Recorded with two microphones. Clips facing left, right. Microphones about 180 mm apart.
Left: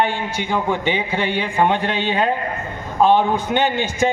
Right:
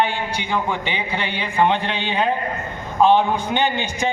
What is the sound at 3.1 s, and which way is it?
Speech, 45° left (ahead or behind).